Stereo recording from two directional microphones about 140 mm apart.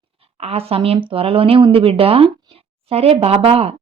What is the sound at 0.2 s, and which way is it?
Speech, 45° right (ahead or behind).